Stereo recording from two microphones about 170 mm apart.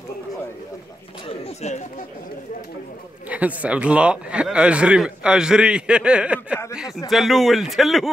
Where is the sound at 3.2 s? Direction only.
10° right (ahead or behind).